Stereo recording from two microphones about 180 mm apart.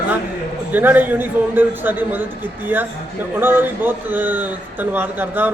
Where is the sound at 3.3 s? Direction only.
10° right (ahead or behind).